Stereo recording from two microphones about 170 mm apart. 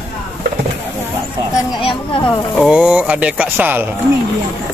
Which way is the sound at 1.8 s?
30° left (ahead or behind).